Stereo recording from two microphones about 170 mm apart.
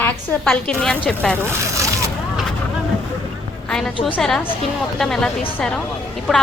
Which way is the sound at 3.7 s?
5° left (ahead or behind).